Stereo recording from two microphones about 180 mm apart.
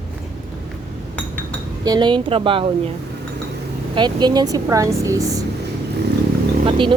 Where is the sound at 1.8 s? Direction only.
25° right (ahead or behind).